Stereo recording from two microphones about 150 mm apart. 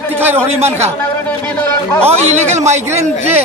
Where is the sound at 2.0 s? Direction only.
45° right (ahead or behind).